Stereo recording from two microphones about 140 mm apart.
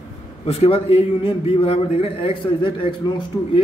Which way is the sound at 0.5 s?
45° left (ahead or behind).